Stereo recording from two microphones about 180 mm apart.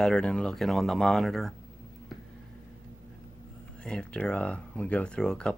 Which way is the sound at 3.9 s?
5° left (ahead or behind).